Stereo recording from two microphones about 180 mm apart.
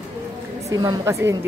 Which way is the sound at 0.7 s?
20° right (ahead or behind).